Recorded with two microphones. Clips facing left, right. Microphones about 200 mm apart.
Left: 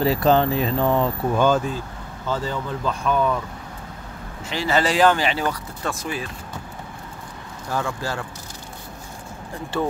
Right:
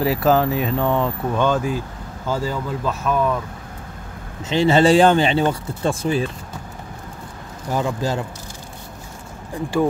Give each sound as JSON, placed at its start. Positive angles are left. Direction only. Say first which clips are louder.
{"t": 0.0, "sound": "speech", "louder": "right 1 dB", "side_deg": -5}
{"t": 2.2, "sound": "speech", "louder": "right 2 dB", "side_deg": -10}
{"t": 4.5, "sound": "speech", "louder": "right 7 dB", "side_deg": -25}
{"t": 7.7, "sound": "speech", "louder": "right 4 dB", "side_deg": -20}